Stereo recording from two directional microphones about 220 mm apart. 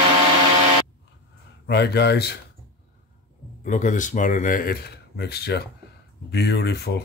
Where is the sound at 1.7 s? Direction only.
50° left (ahead or behind).